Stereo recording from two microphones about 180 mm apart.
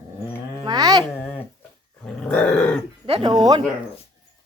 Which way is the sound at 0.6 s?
20° right (ahead or behind).